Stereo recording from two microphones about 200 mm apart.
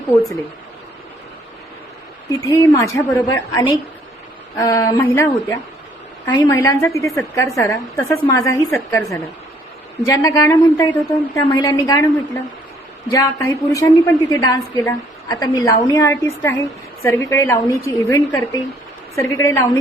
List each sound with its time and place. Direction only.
2.4 s a woman's voice: 15° left (ahead or behind)